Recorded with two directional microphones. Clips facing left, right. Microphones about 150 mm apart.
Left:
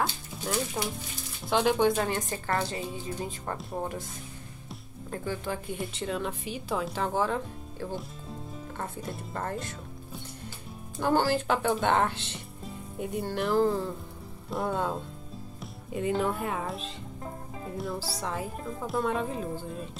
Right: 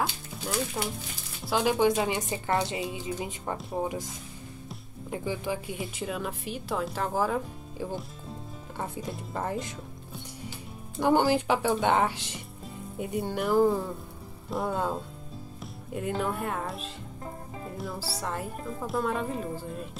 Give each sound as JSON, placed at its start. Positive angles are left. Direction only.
{"t": 0.8, "sound": "a woman's voice", "side_deg": -5}
{"t": 5.1, "sound": "a woman's voice", "side_deg": -15}
{"t": 11.0, "sound": "a woman's voice", "side_deg": -15}